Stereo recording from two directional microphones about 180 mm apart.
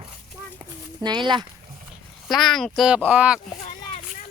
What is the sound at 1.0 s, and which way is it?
Speech, 25° right (ahead or behind).